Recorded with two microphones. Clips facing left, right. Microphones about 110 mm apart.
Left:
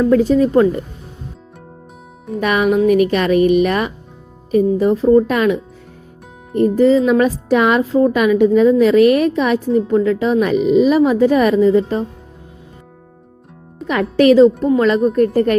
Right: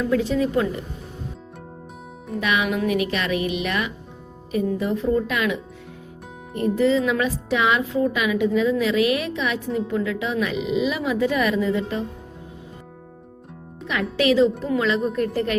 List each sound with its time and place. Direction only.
0.0 s speech: 45° left (ahead or behind)
2.4 s speech: 45° left (ahead or behind)
6.6 s speech: 40° left (ahead or behind)
14.2 s speech: 45° left (ahead or behind)